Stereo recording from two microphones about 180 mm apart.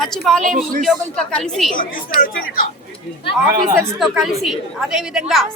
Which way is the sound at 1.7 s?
50° left (ahead or behind).